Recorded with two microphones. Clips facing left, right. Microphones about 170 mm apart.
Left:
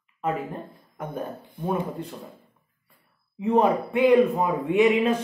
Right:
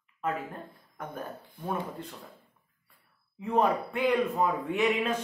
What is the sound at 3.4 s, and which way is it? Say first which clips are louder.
Speech: left 6 dB; 20° left (ahead or behind).